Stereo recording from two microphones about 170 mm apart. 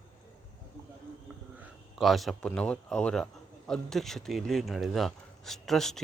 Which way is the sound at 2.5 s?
5° left (ahead or behind).